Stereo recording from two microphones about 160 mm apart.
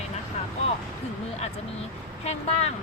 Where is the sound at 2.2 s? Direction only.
40° left (ahead or behind).